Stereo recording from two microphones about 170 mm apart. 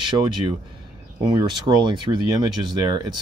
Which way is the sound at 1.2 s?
20° right (ahead or behind).